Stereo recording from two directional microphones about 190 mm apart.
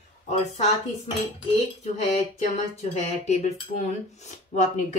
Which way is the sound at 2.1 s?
35° left (ahead or behind).